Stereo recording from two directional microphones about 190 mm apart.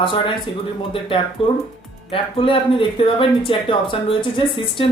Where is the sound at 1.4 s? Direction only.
30° left (ahead or behind).